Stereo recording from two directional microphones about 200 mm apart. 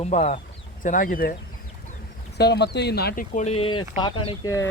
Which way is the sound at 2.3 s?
55° left (ahead or behind).